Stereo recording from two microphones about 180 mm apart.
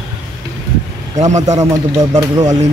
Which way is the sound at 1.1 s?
40° right (ahead or behind).